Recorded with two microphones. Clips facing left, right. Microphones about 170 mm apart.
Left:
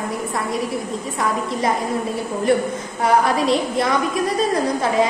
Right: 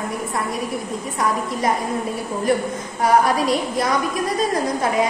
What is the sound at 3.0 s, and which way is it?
Speech, 25° left (ahead or behind).